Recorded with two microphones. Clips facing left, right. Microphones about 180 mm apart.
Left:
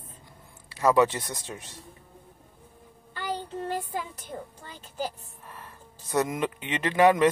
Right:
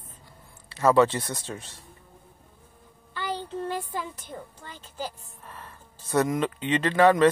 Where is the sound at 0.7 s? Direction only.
15° left (ahead or behind).